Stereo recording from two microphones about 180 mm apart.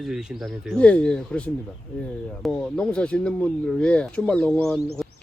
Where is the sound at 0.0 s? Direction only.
Centre (ahead or behind).